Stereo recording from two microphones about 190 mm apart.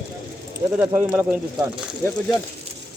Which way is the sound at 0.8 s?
10° right (ahead or behind).